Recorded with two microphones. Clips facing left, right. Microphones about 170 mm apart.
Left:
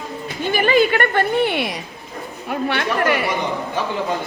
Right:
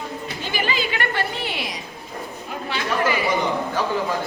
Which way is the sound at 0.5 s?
55° left (ahead or behind).